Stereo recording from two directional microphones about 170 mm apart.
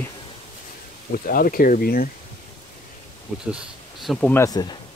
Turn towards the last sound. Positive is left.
turn(degrees=20)  # may be behind; listen again after turning